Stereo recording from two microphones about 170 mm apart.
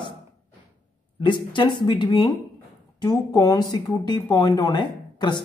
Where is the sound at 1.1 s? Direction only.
30° left (ahead or behind).